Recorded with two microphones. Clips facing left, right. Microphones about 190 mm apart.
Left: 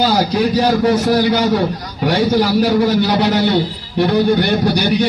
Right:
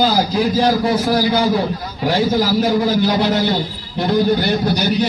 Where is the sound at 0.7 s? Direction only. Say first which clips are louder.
Left 2 dB; 70° left (ahead or behind).